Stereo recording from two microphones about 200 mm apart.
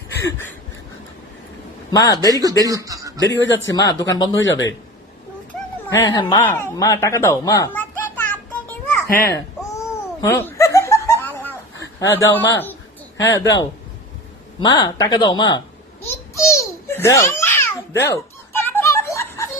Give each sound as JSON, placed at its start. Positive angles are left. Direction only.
{"t": 0.2, "sound": "a sound", "side_deg": 10}
{"t": 1.9, "sound": "a man's voice", "side_deg": 20}
{"t": 2.3, "sound": "speech", "side_deg": -20}
{"t": 2.6, "sound": "a sound", "side_deg": -15}
{"t": 3.3, "sound": "speech", "side_deg": 65}
{"t": 3.8, "sound": "speech", "side_deg": 20}
{"t": 5.9, "sound": "a child's voice", "side_deg": 15}
{"t": 9.1, "sound": "giggle", "side_deg": 15}
{"t": 11.9, "sound": "speech", "side_deg": 15}
{"t": 14.6, "sound": "speech", "side_deg": 20}
{"t": 16.0, "sound": "babbling", "side_deg": 15}